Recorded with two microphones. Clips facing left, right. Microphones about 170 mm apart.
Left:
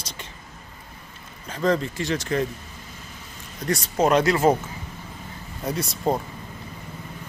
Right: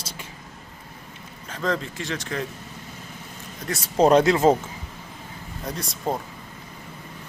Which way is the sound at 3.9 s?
30° right (ahead or behind).